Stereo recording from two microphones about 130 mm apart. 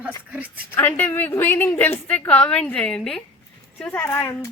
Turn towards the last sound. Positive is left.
turn(degrees=20)  # may be behind; listen again after turning